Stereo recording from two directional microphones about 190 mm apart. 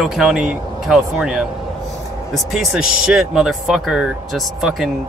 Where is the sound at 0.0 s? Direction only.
5° right (ahead or behind).